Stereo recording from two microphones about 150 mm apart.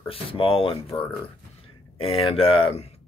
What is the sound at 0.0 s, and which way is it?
Speech, 35° left (ahead or behind).